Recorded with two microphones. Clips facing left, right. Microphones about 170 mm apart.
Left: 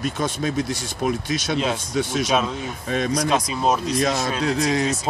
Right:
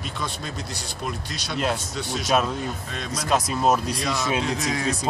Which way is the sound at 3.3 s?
Centre (ahead or behind).